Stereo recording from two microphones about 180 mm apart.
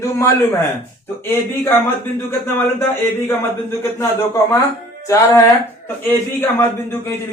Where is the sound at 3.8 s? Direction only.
15° left (ahead or behind).